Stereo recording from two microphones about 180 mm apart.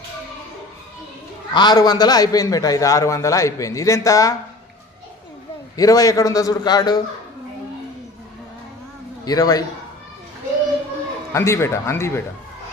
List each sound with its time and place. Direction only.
1.5 s a man's voice: 25° left (ahead or behind)
5.8 s a man's voice: 20° left (ahead or behind)
9.2 s a man's voice: 20° left (ahead or behind)
11.3 s speech: 15° left (ahead or behind)